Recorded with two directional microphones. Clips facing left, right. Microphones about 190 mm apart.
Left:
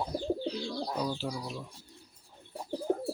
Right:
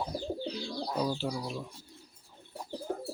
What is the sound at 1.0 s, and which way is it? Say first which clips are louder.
Speech: right 4 dB; 10° right (ahead or behind).